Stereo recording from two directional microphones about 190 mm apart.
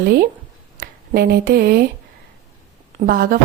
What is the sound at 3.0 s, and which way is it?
Speech, 50° right (ahead or behind).